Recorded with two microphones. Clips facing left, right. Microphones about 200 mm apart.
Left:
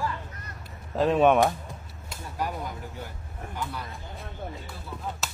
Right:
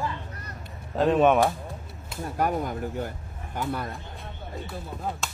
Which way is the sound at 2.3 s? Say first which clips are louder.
Right 6 dB; 55° right (ahead or behind).